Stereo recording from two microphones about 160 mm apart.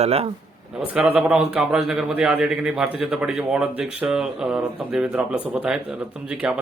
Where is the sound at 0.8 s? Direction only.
5° right (ahead or behind).